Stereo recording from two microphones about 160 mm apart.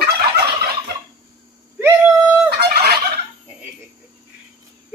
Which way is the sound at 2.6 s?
85° right.